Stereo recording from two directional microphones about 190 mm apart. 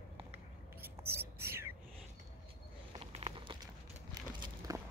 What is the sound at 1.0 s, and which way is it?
Whispering, 15° right (ahead or behind).